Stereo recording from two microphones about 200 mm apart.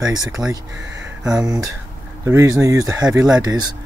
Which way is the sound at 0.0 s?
20° right (ahead or behind).